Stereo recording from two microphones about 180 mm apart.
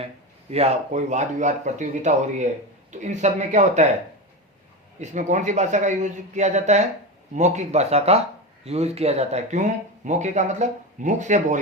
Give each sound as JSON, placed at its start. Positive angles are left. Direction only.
{"t": 0.5, "sound": "speech", "side_deg": -40}
{"t": 4.9, "sound": "speech", "side_deg": -40}